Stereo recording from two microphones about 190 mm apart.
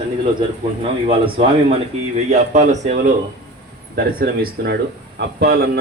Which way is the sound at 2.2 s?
35° right (ahead or behind).